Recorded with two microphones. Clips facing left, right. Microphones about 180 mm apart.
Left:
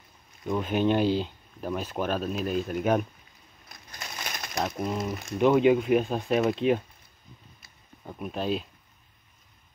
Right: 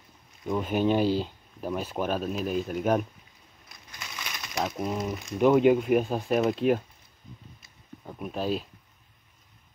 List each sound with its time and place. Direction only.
0.5 s speech: 10° right (ahead or behind)
3.6 s a sound: 50° left (ahead or behind)
4.6 s speech: 5° right (ahead or behind)
8.0 s speech: centre (ahead or behind)